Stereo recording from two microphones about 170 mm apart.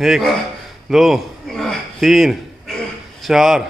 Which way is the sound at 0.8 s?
Centre (ahead or behind).